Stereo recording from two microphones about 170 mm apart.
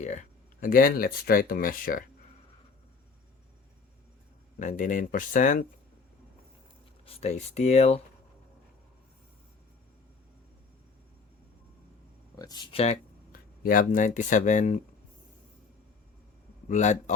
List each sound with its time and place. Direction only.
0.0 s speech: 45° left (ahead or behind)
4.6 s speech: 50° left (ahead or behind)
7.0 s speech: 35° left (ahead or behind)
12.4 s speech: 25° left (ahead or behind)
13.3 s speech: 55° left (ahead or behind)
16.6 s speech: 45° left (ahead or behind)